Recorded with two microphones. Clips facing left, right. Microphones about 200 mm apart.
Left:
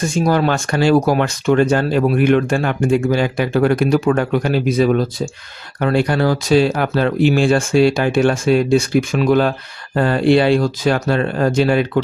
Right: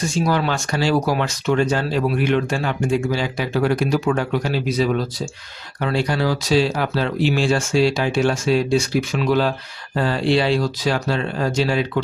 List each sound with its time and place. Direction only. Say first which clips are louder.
0.1 s speech: left 5 dB; 50° left (ahead or behind)